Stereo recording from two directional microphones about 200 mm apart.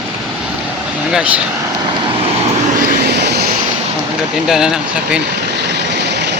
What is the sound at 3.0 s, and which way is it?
Vehicle, 55° right (ahead or behind).